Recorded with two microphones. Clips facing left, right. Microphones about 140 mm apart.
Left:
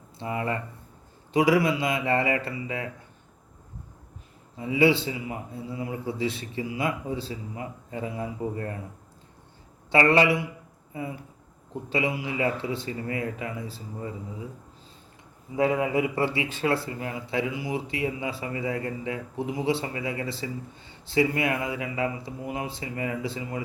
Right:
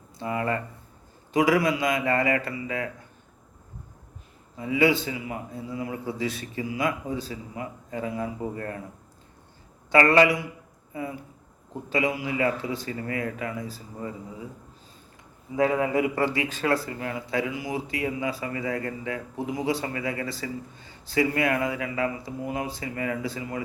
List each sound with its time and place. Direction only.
0.2 s speech: 20° left (ahead or behind)
4.5 s speech: 25° left (ahead or behind)
9.9 s speech: 25° left (ahead or behind)
11.9 s speech: 25° left (ahead or behind)
15.5 s speech: 20° left (ahead or behind)